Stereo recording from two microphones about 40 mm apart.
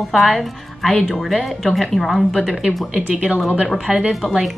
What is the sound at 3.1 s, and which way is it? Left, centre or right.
Speech, right.